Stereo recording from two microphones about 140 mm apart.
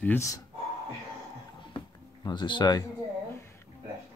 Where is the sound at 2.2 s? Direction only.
35° left (ahead or behind).